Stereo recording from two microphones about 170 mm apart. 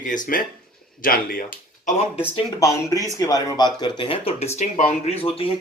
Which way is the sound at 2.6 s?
20° left (ahead or behind).